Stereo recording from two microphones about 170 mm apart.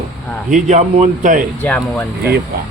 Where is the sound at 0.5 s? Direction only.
45° right (ahead or behind).